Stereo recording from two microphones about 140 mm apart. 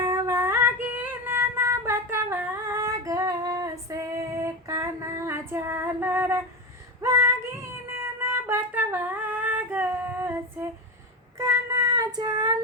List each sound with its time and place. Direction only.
0.0 s child singing: 20° right (ahead or behind)
7.0 s female singing: 20° right (ahead or behind)
11.3 s child singing: 25° right (ahead or behind)